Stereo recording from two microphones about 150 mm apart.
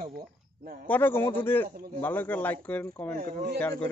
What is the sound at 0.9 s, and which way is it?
Speech, 15° left (ahead or behind).